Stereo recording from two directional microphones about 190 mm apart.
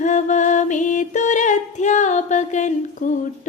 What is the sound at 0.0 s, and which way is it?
Music, 40° left (ahead or behind).